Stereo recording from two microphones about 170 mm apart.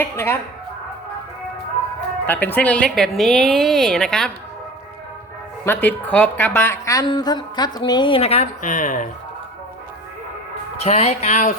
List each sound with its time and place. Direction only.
0.0 s a woman's voice: 15° left (ahead or behind)
2.2 s speech: 10° left (ahead or behind)
5.6 s a woman's voice: 10° left (ahead or behind); by 9.0 s 50° left (ahead or behind)
10.8 s speech: 40° left (ahead or behind)